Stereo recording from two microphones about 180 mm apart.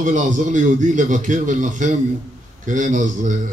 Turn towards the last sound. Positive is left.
turn(degrees=-45)  # may be behind; listen again after turning